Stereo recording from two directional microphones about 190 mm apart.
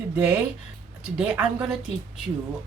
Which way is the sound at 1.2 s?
5° right (ahead or behind).